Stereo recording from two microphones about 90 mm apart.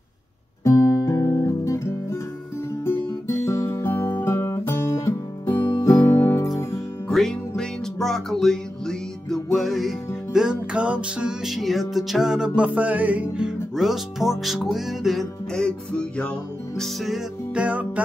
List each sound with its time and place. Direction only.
0.7 s guitar: 40° left (ahead or behind)
3.4 s music: 30° left (ahead or behind)
5.8 s music: 45° left (ahead or behind)
7.1 s music: 5° left (ahead or behind)
17.6 s music: 15° right (ahead or behind)